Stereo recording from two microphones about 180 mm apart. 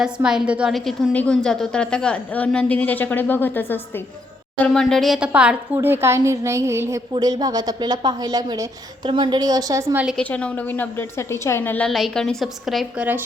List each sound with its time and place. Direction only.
0.0 s a woman's voice: 5° right (ahead or behind)
10.2 s a woman's voice: 5° left (ahead or behind); by 13.2 s 10° right (ahead or behind)